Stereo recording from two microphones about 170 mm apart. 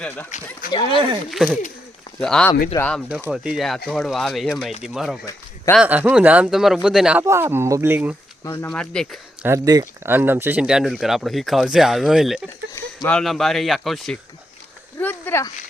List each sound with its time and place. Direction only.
0.7 s speech: 30° left (ahead or behind)
1.3 s speech: centre (ahead or behind)
3.1 s speech: 10° right (ahead or behind)
8.4 s speech: 15° left (ahead or behind)
9.4 s speech: 20° right (ahead or behind); by 14.2 s centre (ahead or behind)
14.9 s a sound: 10° left (ahead or behind)